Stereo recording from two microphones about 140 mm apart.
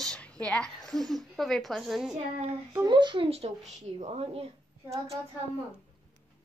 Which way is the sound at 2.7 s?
30° right (ahead or behind).